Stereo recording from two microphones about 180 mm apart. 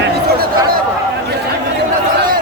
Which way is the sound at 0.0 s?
60° right (ahead or behind).